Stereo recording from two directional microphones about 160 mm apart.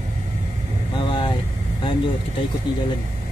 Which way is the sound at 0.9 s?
30° left (ahead or behind).